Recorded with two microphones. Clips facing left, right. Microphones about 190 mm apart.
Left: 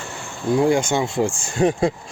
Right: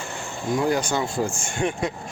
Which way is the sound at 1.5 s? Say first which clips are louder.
Left 8 dB; 35° left (ahead or behind).